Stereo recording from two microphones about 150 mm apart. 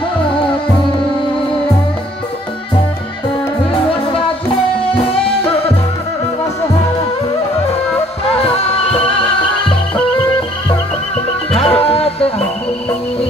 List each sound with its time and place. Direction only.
8.4 s music: 40° left (ahead or behind)
11.6 s music: 40° left (ahead or behind)